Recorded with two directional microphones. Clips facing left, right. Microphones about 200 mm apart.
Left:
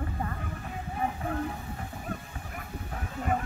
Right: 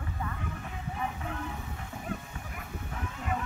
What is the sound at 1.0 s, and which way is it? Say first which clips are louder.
Music: left 6 dB; 40° left (ahead or behind).